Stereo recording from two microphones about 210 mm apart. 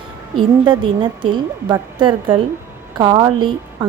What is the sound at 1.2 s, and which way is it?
A woman's voice, 20° right (ahead or behind).